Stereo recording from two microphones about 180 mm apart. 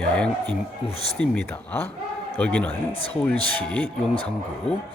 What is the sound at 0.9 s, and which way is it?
Speech, 35° left (ahead or behind).